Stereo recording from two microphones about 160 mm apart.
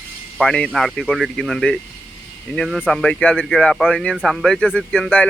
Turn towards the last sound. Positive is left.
turn(degrees=10)  # may be behind; listen again after turning